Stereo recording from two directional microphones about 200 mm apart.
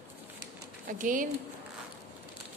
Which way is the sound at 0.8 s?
40° right (ahead or behind).